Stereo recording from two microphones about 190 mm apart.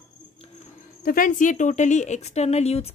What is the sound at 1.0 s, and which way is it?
Speech, 45° left (ahead or behind).